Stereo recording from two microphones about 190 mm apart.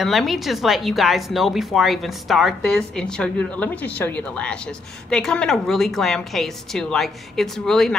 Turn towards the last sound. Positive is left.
turn(degrees=0)  # may be behind; listen again after turning